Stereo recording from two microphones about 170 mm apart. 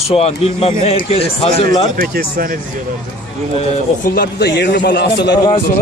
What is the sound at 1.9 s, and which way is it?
Speech, 60° right (ahead or behind).